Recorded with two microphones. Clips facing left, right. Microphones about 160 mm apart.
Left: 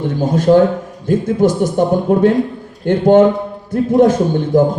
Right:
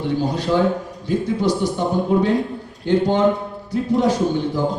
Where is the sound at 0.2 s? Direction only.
45° left (ahead or behind).